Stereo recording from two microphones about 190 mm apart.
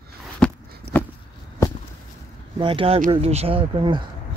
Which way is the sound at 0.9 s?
60° right (ahead or behind).